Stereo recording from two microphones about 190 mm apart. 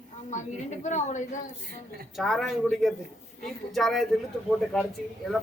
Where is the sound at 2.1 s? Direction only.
Centre (ahead or behind).